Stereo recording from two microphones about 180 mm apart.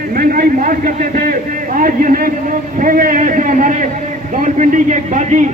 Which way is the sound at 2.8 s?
50° right (ahead or behind).